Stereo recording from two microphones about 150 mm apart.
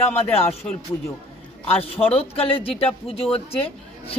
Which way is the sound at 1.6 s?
40° left (ahead or behind).